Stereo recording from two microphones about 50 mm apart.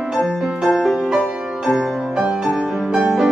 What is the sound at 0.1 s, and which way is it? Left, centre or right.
Music, centre.